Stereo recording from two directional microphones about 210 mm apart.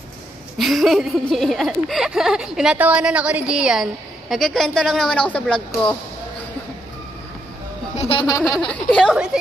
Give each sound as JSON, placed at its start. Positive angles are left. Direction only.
{"t": 0.6, "sound": "speech", "side_deg": 0}
{"t": 7.9, "sound": "speech", "side_deg": 30}
{"t": 8.5, "sound": "speech", "side_deg": 5}